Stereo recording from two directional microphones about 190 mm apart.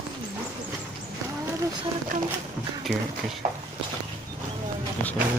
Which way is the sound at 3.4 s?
40° right (ahead or behind).